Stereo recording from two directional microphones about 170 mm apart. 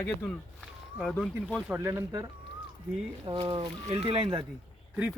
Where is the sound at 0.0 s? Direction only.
5° left (ahead or behind).